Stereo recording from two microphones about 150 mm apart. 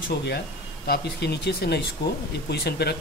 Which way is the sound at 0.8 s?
90° left.